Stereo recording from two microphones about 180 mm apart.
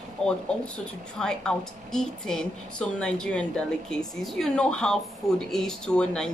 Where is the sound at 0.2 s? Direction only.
5° left (ahead or behind).